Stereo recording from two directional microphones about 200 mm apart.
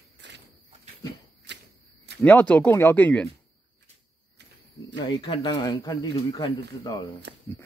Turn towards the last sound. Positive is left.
turn(degrees=-65)  # may be behind; listen again after turning